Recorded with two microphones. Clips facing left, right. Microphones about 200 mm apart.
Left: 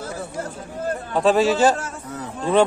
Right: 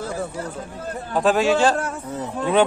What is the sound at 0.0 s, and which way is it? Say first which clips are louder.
Chatter: right 2 dB; 45° left (ahead or behind).